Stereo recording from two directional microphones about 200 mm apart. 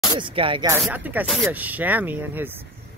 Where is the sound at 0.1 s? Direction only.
25° right (ahead or behind).